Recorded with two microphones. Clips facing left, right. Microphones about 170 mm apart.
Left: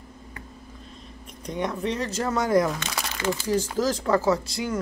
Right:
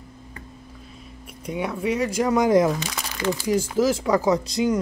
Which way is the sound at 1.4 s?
10° right (ahead or behind).